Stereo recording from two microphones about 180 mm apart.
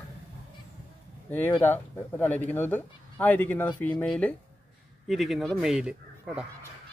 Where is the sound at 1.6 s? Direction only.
10° left (ahead or behind); by 6.4 s 5° right (ahead or behind).